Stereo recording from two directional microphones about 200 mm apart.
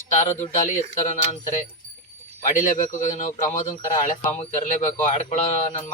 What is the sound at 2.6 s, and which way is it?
Speech, 40° left (ahead or behind).